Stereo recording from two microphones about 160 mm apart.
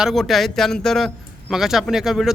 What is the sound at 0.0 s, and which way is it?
A man's voice, centre (ahead or behind).